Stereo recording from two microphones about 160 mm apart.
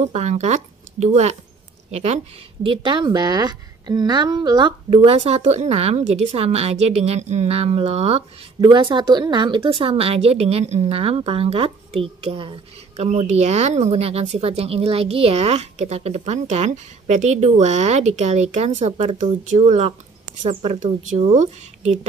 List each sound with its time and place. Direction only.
0.0 s speech: 45° right (ahead or behind); by 4.7 s 25° right (ahead or behind)
4.8 s a woman's voice: 40° right (ahead or behind)
8.5 s a woman's voice: 30° right (ahead or behind)